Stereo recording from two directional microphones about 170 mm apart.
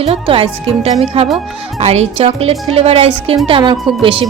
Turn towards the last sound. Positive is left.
turn(degrees=-30)  # may be behind; listen again after turning